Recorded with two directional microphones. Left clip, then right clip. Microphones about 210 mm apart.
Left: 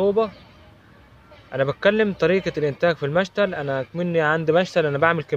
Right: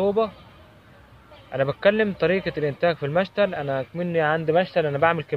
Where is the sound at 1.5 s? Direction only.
35° left (ahead or behind).